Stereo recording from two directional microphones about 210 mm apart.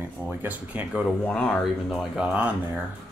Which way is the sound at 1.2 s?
5° left (ahead or behind).